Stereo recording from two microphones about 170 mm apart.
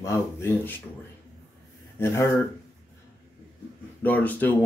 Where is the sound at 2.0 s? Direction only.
15° left (ahead or behind).